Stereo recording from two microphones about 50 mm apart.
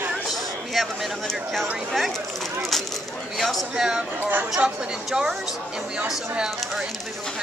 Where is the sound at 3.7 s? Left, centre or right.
Centre.